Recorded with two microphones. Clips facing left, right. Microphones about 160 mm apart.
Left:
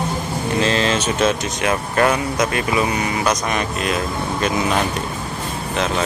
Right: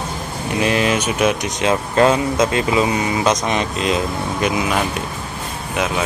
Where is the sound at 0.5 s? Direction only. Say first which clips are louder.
Right 2 dB; 15° right (ahead or behind).